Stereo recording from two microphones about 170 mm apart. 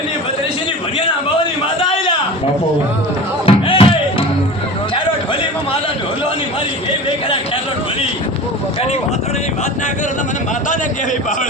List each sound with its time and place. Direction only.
3.4 s music: 35° left (ahead or behind)